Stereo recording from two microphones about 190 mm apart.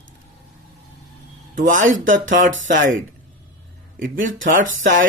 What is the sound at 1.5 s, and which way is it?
Speech, 45° right (ahead or behind).